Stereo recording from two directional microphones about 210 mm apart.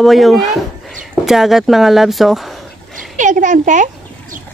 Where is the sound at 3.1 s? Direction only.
35° right (ahead or behind).